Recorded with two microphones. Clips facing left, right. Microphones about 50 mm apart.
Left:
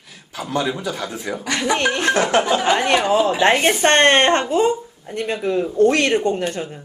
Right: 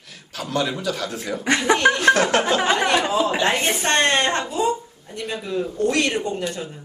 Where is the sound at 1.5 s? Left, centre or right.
Right.